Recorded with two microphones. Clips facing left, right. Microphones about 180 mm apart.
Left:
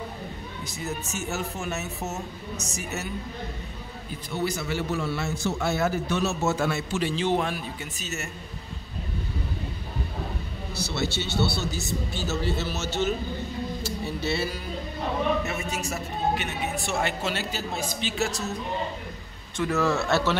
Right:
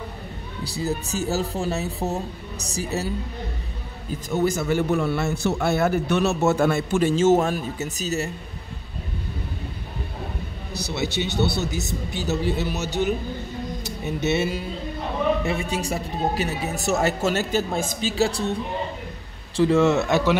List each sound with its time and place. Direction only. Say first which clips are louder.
0.7 s a man's voice: right 7 dB; 35° right (ahead or behind)
4.3 s a man's voice: right 7 dB; 50° right (ahead or behind)
10.7 s speech: right 2 dB; 15° right (ahead or behind)
13.8 s music: right 6 dB; 20° right (ahead or behind)
15.4 s a man's voice: right 5 dB; 30° right (ahead or behind); by 18.1 s 50° right (ahead or behind)
18.1 s a man's voice: right 9 dB; 30° right (ahead or behind); by 20.3 s 15° right (ahead or behind)